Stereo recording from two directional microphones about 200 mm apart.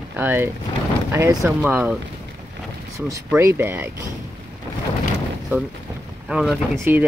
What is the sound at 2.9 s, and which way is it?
Speech, 15° right (ahead or behind).